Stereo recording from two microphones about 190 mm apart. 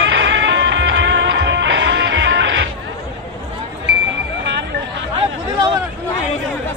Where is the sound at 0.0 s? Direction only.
75° right (ahead or behind).